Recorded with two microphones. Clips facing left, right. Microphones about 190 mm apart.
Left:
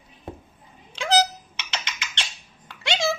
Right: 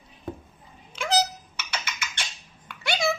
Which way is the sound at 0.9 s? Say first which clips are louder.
Left 3 dB; 30° left (ahead or behind).